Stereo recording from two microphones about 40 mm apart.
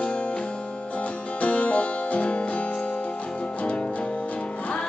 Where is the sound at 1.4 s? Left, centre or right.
Left.